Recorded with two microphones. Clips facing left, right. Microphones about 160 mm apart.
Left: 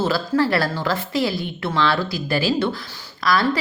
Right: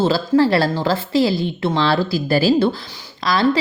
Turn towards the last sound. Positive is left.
turn(degrees=-25)  # may be behind; listen again after turning